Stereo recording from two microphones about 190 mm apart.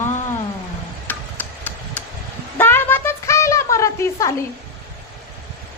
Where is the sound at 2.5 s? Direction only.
10° left (ahead or behind).